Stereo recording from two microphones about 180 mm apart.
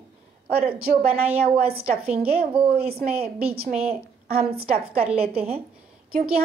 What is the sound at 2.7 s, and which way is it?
Speech, 60° right (ahead or behind).